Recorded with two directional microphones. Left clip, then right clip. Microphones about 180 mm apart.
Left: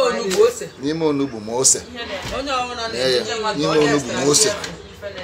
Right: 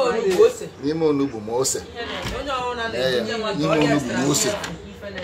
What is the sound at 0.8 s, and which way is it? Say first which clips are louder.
Speech: even; 15° left (ahead or behind).